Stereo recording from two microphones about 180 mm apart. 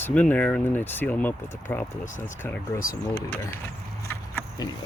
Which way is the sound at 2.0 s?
45° left (ahead or behind).